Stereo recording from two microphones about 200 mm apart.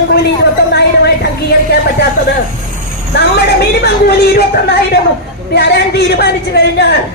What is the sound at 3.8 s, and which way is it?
Speech, 55° left (ahead or behind).